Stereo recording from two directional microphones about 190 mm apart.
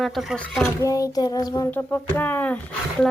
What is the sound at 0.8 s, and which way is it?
Child singing, 15° left (ahead or behind).